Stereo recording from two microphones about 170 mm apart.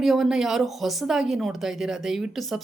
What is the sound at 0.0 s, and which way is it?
Speech, centre (ahead or behind).